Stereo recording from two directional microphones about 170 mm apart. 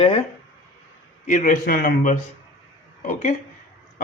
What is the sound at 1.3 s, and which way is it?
A man's voice, 50° left (ahead or behind).